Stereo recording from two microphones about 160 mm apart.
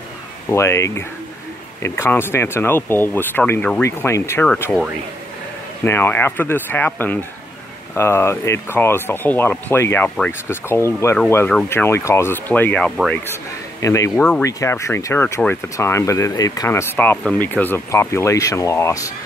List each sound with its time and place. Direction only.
0.5 s speech: 15° left (ahead or behind)
5.9 s speech: 15° left (ahead or behind)